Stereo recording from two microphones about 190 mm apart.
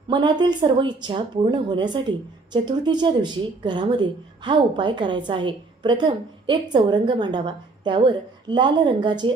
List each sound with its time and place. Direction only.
0.1 s a woman's voice: 25° right (ahead or behind)